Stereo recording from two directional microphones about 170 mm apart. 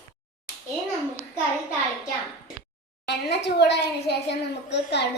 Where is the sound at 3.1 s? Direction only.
80° left.